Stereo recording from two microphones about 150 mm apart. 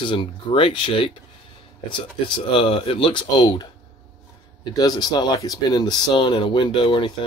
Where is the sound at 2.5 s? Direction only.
35° left (ahead or behind).